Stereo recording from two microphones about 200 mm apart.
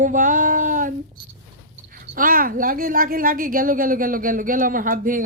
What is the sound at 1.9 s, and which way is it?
A woman's voice, 45° right (ahead or behind).